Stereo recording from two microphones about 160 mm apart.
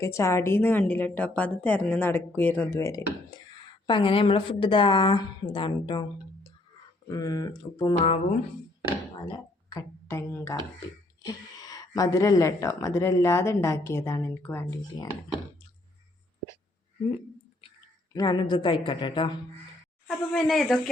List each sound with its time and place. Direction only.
0.0 s a woman's voice: 15° left (ahead or behind)
3.8 s a woman's voice: 30° left (ahead or behind)
9.1 s speech: 30° left (ahead or behind); by 14.7 s 10° left (ahead or behind)
18.1 s a woman's voice: 25° left (ahead or behind)
20.1 s speech: 5° left (ahead or behind)